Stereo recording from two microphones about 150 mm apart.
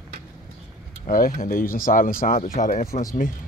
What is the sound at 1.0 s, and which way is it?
Speech, 70° left (ahead or behind).